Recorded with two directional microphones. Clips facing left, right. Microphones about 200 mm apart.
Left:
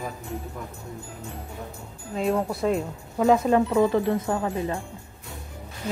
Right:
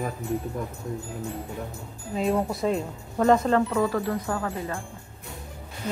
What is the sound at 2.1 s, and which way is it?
Speech, centre (ahead or behind).